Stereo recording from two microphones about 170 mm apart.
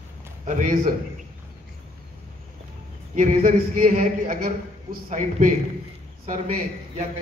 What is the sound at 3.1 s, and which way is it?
A man's voice, 50° right (ahead or behind).